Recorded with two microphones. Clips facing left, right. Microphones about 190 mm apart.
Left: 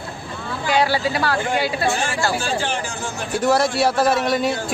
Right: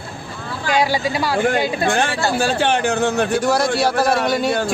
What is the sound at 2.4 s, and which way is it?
Speech, 65° right (ahead or behind).